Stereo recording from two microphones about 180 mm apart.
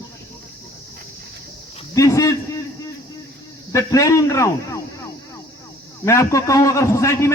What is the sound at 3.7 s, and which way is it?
Speech, 20° left (ahead or behind).